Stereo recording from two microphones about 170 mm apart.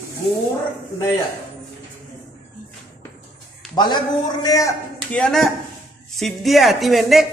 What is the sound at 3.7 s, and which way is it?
A man's voice, 25° left (ahead or behind).